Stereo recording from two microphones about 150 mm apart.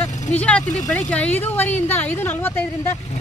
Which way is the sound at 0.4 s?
10° left (ahead or behind).